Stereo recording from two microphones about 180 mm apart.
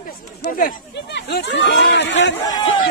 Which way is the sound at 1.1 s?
70° left (ahead or behind).